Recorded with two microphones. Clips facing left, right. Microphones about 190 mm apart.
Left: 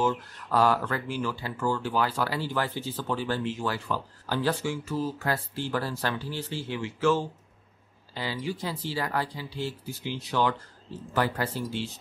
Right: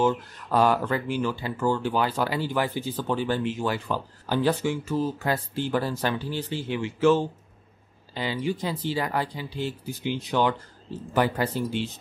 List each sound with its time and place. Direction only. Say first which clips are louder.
0.0 s speech: right 4 dB; 20° right (ahead or behind)